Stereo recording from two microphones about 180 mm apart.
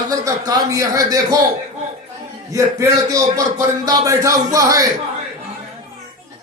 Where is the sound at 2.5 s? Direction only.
20° right (ahead or behind).